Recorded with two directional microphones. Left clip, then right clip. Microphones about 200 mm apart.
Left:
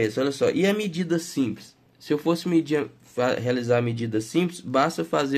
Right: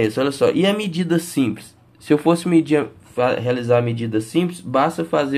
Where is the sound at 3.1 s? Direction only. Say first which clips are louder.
Right 5 dB; 15° left (ahead or behind).